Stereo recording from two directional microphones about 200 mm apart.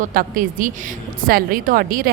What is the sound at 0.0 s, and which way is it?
A woman's voice, 45° right (ahead or behind).